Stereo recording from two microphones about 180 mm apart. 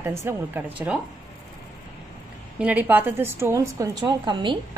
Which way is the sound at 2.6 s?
10° right (ahead or behind).